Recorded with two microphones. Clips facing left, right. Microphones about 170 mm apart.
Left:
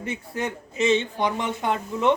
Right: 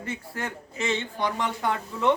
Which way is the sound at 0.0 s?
20° left (ahead or behind).